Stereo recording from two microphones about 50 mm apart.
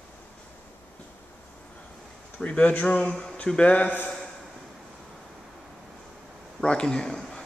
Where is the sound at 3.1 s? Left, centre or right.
Centre.